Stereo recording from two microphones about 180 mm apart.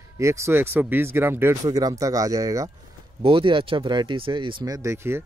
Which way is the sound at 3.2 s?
30° right (ahead or behind).